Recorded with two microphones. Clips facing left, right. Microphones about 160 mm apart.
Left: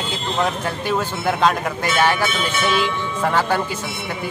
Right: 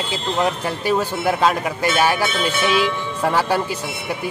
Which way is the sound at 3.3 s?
10° right (ahead or behind).